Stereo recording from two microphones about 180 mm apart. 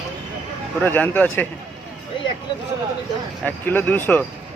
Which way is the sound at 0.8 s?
10° left (ahead or behind).